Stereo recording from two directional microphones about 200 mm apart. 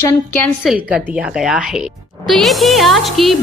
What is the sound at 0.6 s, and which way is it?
A woman's voice, centre (ahead or behind).